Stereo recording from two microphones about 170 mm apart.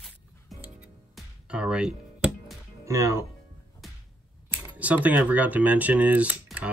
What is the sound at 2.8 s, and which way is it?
Speech, 20° right (ahead or behind).